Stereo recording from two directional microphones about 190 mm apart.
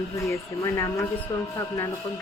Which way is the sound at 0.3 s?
15° left (ahead or behind).